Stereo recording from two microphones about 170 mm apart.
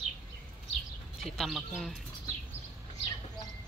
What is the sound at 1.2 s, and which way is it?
Speech, centre (ahead or behind).